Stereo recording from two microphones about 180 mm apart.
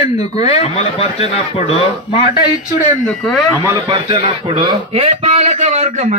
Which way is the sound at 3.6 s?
25° right (ahead or behind).